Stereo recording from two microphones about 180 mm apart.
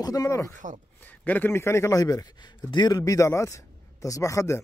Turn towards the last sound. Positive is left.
turn(degrees=15)  # may be behind; listen again after turning